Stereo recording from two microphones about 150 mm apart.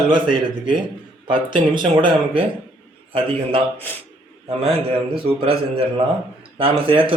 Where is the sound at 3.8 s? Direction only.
10° left (ahead or behind).